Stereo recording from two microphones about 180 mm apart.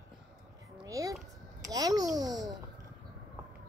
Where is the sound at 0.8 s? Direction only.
20° right (ahead or behind).